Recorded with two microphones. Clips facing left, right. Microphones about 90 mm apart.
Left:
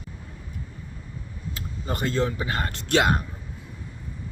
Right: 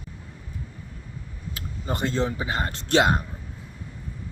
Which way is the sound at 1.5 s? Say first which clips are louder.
Right 1 dB; 20° right (ahead or behind).